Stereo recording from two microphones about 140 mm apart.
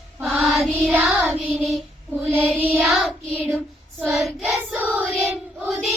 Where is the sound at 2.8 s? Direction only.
Centre (ahead or behind).